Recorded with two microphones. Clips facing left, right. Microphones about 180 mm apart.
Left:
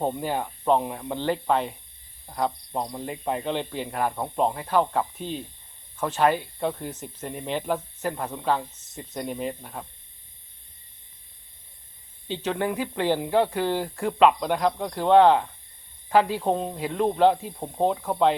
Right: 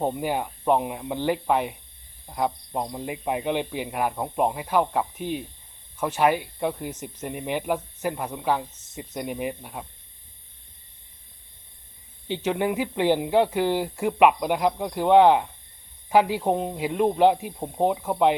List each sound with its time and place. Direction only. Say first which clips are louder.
0.1 s speech: right 1 dB; 15° right (ahead or behind)
12.3 s speech: right 2 dB; 15° right (ahead or behind)